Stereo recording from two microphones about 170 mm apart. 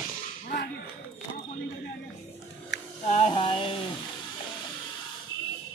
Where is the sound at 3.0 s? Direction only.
40° left (ahead or behind).